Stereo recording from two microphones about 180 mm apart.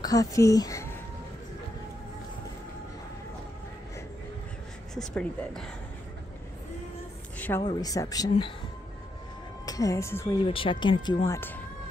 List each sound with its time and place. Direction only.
0.0 s speech: 20° left (ahead or behind)
4.9 s speech: 5° left (ahead or behind)
7.3 s a sound: 10° left (ahead or behind)
7.6 s speech: 20° left (ahead or behind)
9.7 s speech: 20° left (ahead or behind)
10.4 s speech: 30° left (ahead or behind); by 11.6 s 15° left (ahead or behind)